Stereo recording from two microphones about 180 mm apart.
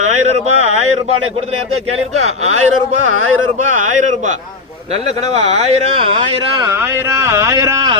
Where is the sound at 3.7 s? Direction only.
40° right (ahead or behind).